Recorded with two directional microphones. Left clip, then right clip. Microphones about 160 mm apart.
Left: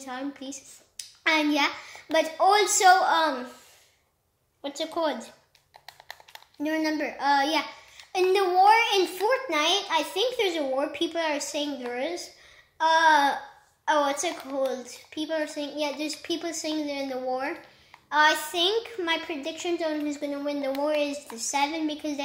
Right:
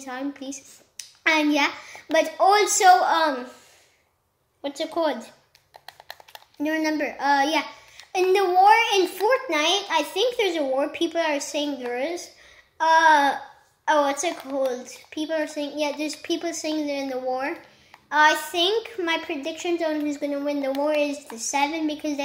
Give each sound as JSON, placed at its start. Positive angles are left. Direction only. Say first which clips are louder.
{"t": 0.0, "sound": "a child's voice", "louder": "right 3 dB", "side_deg": -15}
{"t": 4.6, "sound": "a child's voice", "louder": "right 3 dB", "side_deg": -15}
{"t": 5.9, "sound": "a sound", "louder": "right 2 dB", "side_deg": -40}
{"t": 6.6, "sound": "a child's voice", "louder": "right 3 dB", "side_deg": -10}